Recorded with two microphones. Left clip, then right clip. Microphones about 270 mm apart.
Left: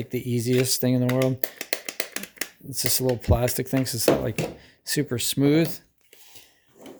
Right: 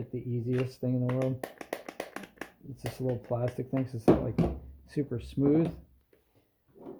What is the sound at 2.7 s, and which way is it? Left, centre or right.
Speech, left.